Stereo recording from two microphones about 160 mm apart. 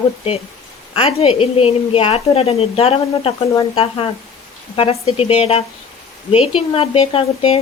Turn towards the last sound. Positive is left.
turn(degrees=40)  # may be behind; listen again after turning